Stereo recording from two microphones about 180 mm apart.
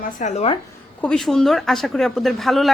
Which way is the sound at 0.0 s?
45° left (ahead or behind).